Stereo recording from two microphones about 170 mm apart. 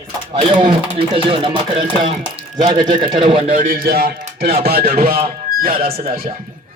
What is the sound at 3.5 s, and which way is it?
Speech, 55° right (ahead or behind).